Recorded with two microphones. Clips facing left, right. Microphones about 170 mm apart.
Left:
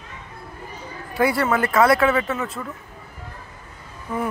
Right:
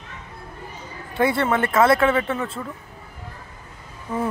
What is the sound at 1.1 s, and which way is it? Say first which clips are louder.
Speech: even; 25° right (ahead or behind).